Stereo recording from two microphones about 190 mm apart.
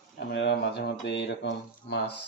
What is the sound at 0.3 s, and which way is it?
Speech, 65° left (ahead or behind).